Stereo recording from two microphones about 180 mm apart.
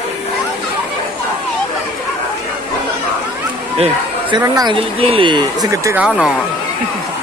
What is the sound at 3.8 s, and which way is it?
Speech, 25° right (ahead or behind).